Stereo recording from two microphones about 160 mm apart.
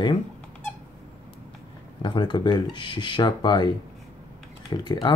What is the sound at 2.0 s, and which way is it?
Speech, 30° left (ahead or behind).